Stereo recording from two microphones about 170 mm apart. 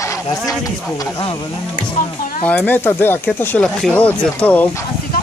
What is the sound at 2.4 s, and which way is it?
Speech, 10° left (ahead or behind).